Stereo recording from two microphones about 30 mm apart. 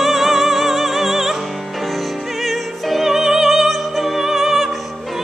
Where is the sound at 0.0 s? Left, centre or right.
Centre.